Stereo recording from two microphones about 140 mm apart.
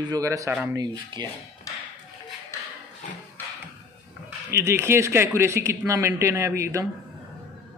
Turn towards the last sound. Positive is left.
turn(degrees=-20)  # may be behind; listen again after turning